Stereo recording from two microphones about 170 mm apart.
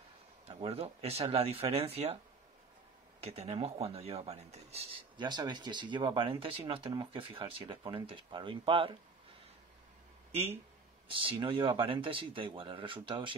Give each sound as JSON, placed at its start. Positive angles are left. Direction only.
{"t": 0.5, "sound": "speech", "side_deg": -35}
{"t": 3.2, "sound": "speech", "side_deg": -35}
{"t": 10.3, "sound": "speech", "side_deg": -40}